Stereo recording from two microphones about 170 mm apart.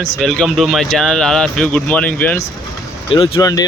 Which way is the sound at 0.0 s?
Centre (ahead or behind).